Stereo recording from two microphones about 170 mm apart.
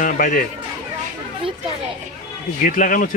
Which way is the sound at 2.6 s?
50° left (ahead or behind).